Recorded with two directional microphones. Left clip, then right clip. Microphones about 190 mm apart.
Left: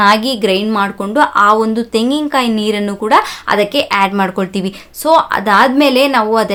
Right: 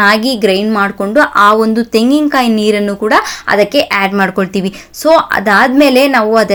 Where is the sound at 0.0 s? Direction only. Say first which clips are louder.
Right 1 dB; 15° right (ahead or behind).